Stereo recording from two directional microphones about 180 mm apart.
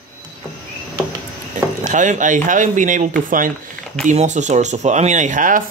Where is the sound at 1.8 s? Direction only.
45° right (ahead or behind).